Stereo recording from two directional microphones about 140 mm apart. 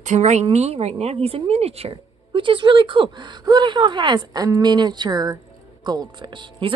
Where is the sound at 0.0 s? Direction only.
55° right (ahead or behind).